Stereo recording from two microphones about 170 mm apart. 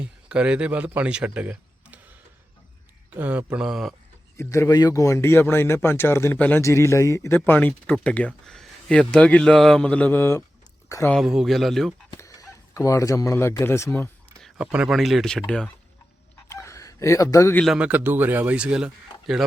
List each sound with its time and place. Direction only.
0.0 s speech: 5° right (ahead or behind)
3.2 s speech: 10° right (ahead or behind)
4.4 s speech: 15° left (ahead or behind)
11.1 s speech: centre (ahead or behind)
12.1 s speech: 20° left (ahead or behind)
14.4 s speech: 5° right (ahead or behind)
16.5 s a sound: 15° left (ahead or behind)
17.6 s speech: 5° right (ahead or behind)